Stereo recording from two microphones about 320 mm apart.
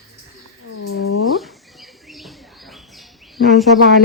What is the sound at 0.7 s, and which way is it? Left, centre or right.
Whale vocalization, left.